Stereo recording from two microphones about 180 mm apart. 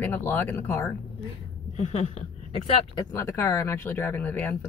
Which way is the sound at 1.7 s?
40° left (ahead or behind).